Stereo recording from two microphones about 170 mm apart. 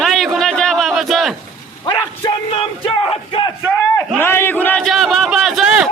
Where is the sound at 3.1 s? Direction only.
30° left (ahead or behind).